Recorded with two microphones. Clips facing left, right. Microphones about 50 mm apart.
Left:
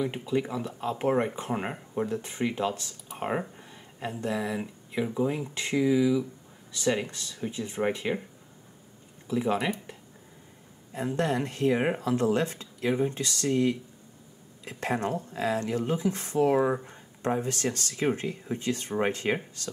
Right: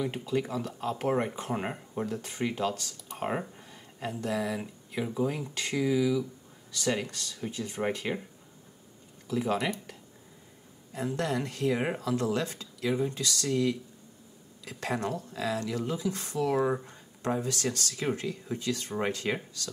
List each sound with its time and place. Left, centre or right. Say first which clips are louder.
0.0 s speech: left 2 dB; centre
2.0 s speech: even; left
3.3 s speech: left 2 dB; centre
4.1 s speech: left 1 dB; left
4.6 s speech: left 3 dB; centre
9.3 s speech: left 2 dB; left
16.5 s speech: left 2 dB; centre
17.2 s speech: left 2 dB; left